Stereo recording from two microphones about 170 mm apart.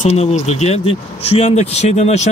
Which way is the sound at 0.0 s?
40° left (ahead or behind).